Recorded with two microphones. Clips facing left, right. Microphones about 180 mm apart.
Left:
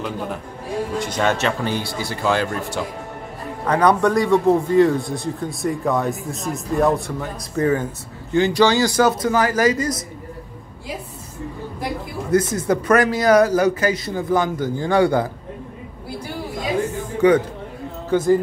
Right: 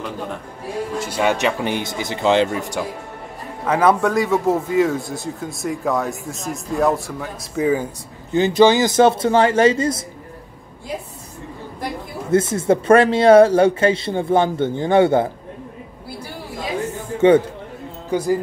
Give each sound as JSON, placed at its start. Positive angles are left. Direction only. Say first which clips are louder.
{"t": 0.9, "sound": "speech", "louder": "right 2 dB", "side_deg": -5}
{"t": 3.6, "sound": "a man's voice", "louder": "even", "side_deg": -5}
{"t": 12.3, "sound": "speech", "louder": "right 2 dB", "side_deg": -25}
{"t": 17.2, "sound": "speech", "louder": "right 2 dB", "side_deg": -25}
{"t": 18.1, "sound": "speech", "louder": "left 3 dB", "side_deg": -10}